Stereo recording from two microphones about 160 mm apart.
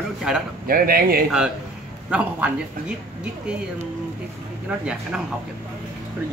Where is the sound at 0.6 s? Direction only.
70° right (ahead or behind).